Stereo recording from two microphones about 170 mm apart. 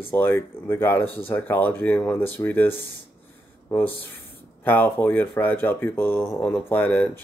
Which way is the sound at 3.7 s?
10° left (ahead or behind).